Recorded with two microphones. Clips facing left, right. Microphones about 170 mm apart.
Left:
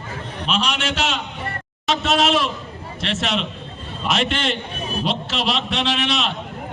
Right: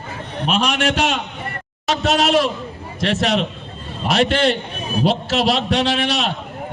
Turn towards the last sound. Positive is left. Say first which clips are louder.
# right 3 dB
turn(degrees=-40)  # may be behind; listen again after turning